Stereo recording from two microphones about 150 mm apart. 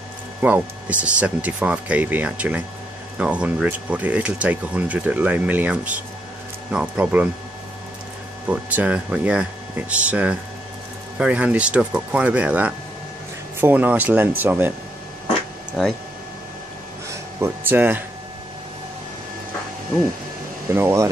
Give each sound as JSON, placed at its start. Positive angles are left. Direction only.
{"t": 0.4, "sound": "speech", "side_deg": -10}
{"t": 8.5, "sound": "speech", "side_deg": -10}
{"t": 15.8, "sound": "speech", "side_deg": 0}
{"t": 17.1, "sound": "a sound", "side_deg": -15}
{"t": 20.7, "sound": "speech", "side_deg": -15}